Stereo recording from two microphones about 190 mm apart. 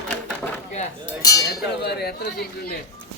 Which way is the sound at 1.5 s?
60° left (ahead or behind).